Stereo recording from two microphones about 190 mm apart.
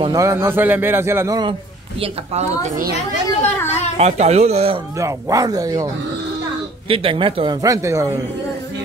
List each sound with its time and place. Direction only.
0.0 s a man's voice: 20° right (ahead or behind)
2.0 s speech: 35° right (ahead or behind)
4.0 s speech: 35° right (ahead or behind)
4.9 s a man's voice: 15° right (ahead or behind)
6.9 s speech: 30° right (ahead or behind)